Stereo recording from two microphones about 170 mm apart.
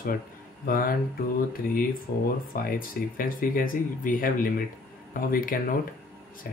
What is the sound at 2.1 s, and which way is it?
Speech, 55° left (ahead or behind).